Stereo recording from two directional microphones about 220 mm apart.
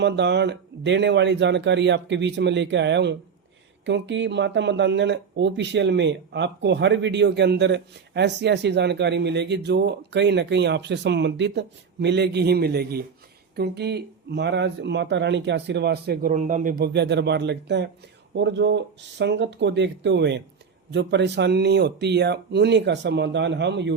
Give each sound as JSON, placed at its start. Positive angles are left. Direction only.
{"t": 0.0, "sound": "speech", "side_deg": -50}